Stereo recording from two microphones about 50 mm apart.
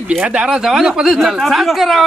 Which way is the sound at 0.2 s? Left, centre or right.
Centre.